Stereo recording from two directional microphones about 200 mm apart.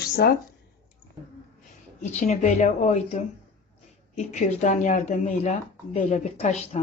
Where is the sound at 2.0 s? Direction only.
35° left (ahead or behind).